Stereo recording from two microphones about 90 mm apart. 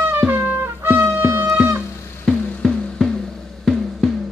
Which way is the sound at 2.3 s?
5° left (ahead or behind).